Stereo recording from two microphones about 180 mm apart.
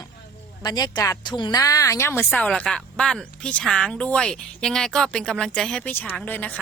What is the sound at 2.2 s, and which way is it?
A woman's voice, 5° left (ahead or behind).